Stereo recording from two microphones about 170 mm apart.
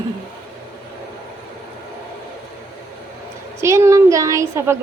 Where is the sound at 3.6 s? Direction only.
15° right (ahead or behind).